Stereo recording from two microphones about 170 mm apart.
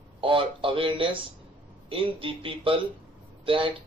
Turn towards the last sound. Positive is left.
turn(degrees=-30)  # may be behind; listen again after turning